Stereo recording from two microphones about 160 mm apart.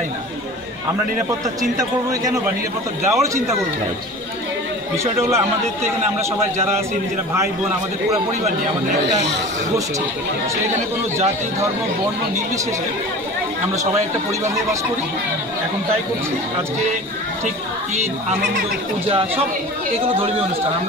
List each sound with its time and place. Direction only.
1.6 s a man's voice: 20° right (ahead or behind)
4.9 s speech: 15° right (ahead or behind)
19.0 s speech: 35° right (ahead or behind)